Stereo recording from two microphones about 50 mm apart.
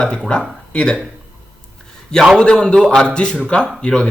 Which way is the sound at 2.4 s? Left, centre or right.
Centre.